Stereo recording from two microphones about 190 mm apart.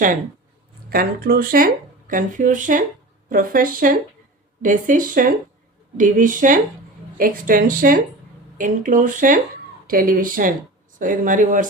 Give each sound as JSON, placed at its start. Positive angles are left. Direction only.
{"t": 0.9, "sound": "speech", "side_deg": -50}